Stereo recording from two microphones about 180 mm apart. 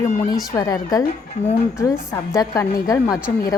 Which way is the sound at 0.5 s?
20° left (ahead or behind).